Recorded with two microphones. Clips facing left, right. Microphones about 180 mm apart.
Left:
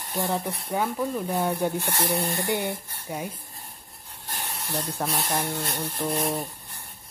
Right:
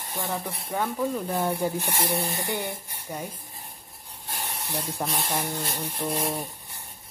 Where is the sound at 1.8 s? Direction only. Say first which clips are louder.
Left 1 dB; 15° right (ahead or behind).